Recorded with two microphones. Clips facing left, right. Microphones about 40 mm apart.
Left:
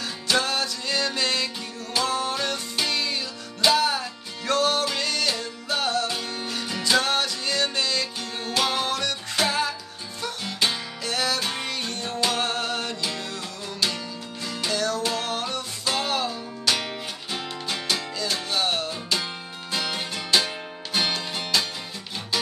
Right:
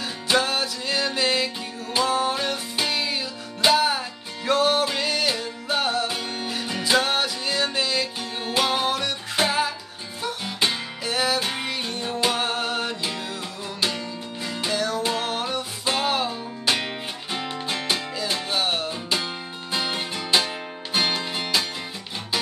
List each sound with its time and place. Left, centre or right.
0.0 s music: centre